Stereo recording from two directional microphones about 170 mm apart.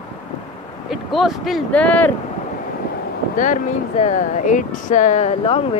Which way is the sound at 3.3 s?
50° left (ahead or behind).